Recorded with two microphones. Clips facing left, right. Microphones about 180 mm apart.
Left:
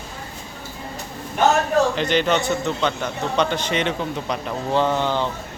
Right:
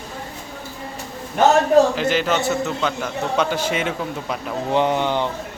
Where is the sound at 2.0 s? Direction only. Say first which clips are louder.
Even; 5° right (ahead or behind).